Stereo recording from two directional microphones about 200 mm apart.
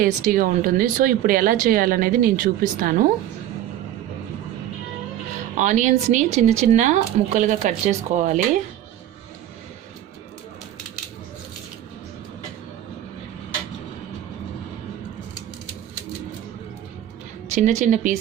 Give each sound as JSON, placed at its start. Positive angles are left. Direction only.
{"t": 0.0, "sound": "speech", "side_deg": -45}
{"t": 5.5, "sound": "speech", "side_deg": -40}
{"t": 17.5, "sound": "speech", "side_deg": -35}